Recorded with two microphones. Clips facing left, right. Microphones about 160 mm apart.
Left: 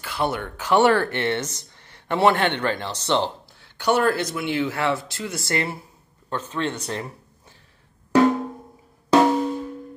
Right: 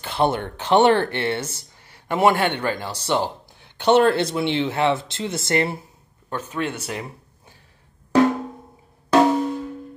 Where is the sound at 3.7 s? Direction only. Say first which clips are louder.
Right 4 dB; 25° right (ahead or behind).